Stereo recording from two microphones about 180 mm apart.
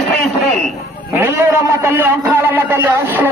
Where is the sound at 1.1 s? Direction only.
15° right (ahead or behind).